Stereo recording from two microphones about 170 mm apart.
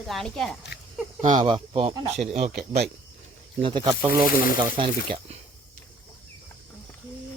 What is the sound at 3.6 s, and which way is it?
Speech, 30° right (ahead or behind).